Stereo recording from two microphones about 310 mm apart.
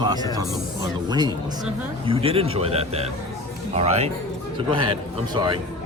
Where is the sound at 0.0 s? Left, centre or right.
Centre.